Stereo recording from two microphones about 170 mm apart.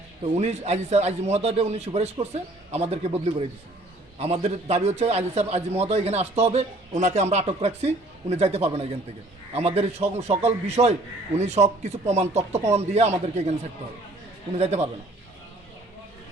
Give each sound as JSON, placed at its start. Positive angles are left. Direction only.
{"t": 0.3, "sound": "a man's voice", "side_deg": -40}